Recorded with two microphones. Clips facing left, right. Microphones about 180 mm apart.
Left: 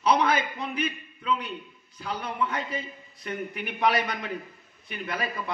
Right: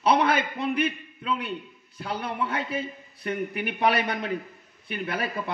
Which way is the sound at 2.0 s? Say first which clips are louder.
Right 1 dB; 60° right (ahead or behind).